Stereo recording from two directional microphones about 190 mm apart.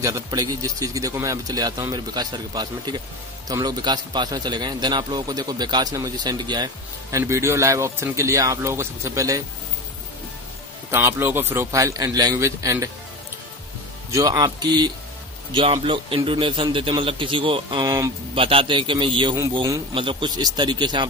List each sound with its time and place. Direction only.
0.0 s a man's voice: 15° right (ahead or behind)
10.9 s a man's voice: 15° right (ahead or behind)
14.1 s a man's voice: 20° right (ahead or behind)